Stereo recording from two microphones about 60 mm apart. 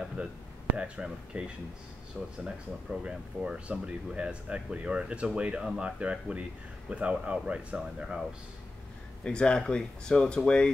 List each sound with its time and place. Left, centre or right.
0.7 s speech: centre
2.4 s speech: centre
9.2 s speech: centre